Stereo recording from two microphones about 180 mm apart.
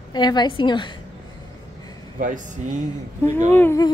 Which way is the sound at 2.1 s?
45° right (ahead or behind).